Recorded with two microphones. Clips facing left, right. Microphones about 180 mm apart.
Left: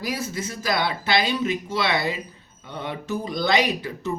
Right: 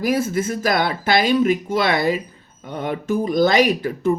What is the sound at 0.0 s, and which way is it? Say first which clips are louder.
Speech: right 9 dB; 50° right (ahead or behind).